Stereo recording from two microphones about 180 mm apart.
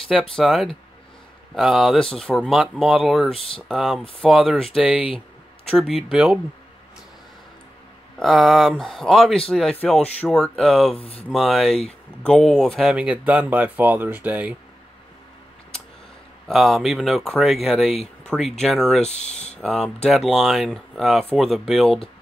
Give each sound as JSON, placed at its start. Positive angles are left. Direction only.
{"t": 0.1, "sound": "speech", "side_deg": 0}
{"t": 4.9, "sound": "speech", "side_deg": 30}
{"t": 5.7, "sound": "speech", "side_deg": 0}
{"t": 8.2, "sound": "speech", "side_deg": 0}
{"t": 11.0, "sound": "speech", "side_deg": 35}
{"t": 11.2, "sound": "speech", "side_deg": 0}
{"t": 16.4, "sound": "speech", "side_deg": 0}